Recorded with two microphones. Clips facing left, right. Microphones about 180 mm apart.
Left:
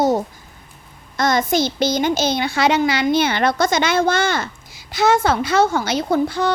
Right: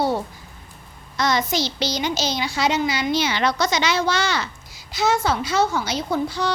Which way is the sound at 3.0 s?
55° left (ahead or behind).